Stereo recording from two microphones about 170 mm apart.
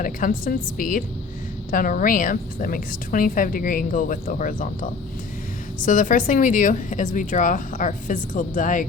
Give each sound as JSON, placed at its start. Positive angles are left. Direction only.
{"t": 0.0, "sound": "a woman's voice", "side_deg": 55}